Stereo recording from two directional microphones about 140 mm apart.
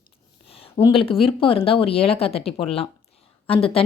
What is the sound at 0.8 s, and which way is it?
Speech, 40° left (ahead or behind).